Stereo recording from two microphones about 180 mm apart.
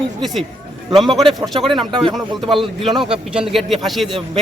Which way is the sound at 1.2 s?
30° right (ahead or behind).